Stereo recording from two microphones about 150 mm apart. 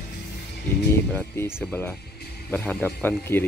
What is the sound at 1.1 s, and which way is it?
Speech, 15° left (ahead or behind).